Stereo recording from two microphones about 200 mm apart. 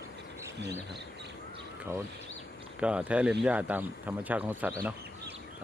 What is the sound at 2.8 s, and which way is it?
Speech, 5° right (ahead or behind).